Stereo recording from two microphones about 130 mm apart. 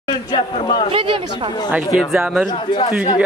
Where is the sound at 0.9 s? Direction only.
40° right (ahead or behind).